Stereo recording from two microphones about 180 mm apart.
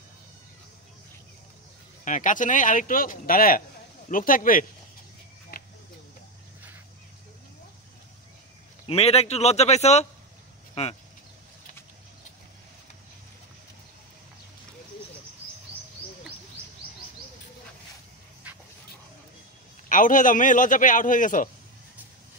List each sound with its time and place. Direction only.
2.0 s a man's voice: 45° left (ahead or behind)
8.8 s speech: 35° left (ahead or behind)
10.7 s a sound: 35° left (ahead or behind)
19.9 s a man's voice: 45° left (ahead or behind)